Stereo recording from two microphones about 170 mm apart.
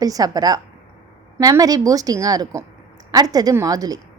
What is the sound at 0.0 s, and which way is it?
A woman's voice, 20° right (ahead or behind).